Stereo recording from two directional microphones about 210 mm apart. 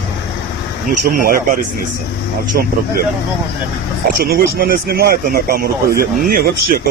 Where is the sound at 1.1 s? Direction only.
40° right (ahead or behind).